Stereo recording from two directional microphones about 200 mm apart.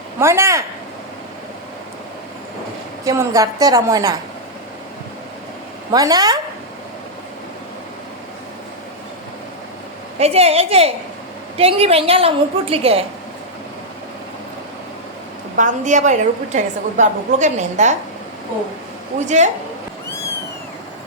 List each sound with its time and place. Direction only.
0.2 s a woman's voice: 15° right (ahead or behind)
3.0 s a woman's voice: 15° right (ahead or behind)
5.9 s a woman's voice: 20° right (ahead or behind)
10.2 s a woman's voice: 30° right (ahead or behind)
15.5 s a woman's voice: 40° right (ahead or behind)
19.2 s a woman's voice: 35° right (ahead or behind)